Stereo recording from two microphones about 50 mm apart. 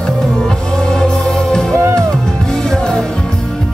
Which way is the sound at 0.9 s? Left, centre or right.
Centre.